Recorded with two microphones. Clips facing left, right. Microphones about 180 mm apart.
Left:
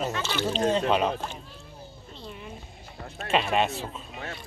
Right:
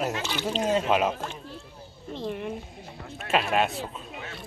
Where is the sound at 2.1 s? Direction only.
65° right (ahead or behind).